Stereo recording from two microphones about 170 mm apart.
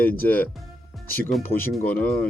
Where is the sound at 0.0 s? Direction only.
10° left (ahead or behind).